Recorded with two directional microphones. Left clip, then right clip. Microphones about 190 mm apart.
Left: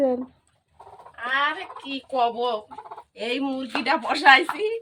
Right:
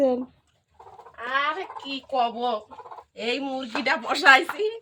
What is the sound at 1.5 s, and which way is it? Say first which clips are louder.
Speech: right 1 dB; 20° right (ahead or behind).